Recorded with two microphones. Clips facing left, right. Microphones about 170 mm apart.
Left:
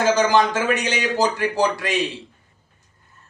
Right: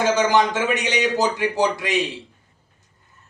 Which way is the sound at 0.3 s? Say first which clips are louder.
Left 1 dB; 20° right (ahead or behind).